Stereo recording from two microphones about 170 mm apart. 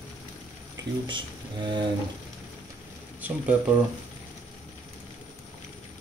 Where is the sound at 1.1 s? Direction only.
30° right (ahead or behind).